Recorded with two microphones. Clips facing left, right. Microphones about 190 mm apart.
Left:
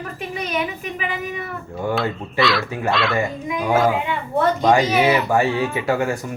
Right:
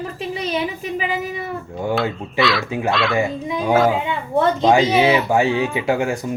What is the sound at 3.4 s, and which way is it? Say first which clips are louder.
A woman's voice: right 1 dB; 30° right (ahead or behind).